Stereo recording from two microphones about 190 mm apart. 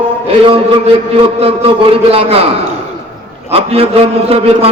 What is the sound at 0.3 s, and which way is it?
A man's voice, 30° right (ahead or behind).